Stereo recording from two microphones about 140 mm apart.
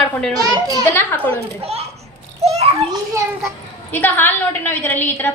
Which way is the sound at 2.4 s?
50° right (ahead or behind).